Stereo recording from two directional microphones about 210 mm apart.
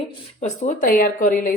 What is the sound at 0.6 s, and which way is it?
Speech, 40° left (ahead or behind).